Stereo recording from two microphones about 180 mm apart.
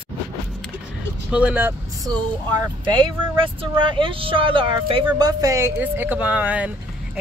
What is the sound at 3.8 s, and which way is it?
Speech, 30° right (ahead or behind).